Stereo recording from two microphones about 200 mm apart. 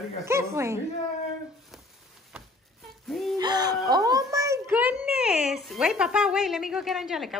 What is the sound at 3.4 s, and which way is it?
A child's voice, 20° right (ahead or behind).